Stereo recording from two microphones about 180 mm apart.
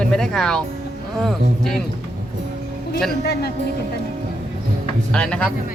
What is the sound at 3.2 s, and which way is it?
Speech, 65° left (ahead or behind).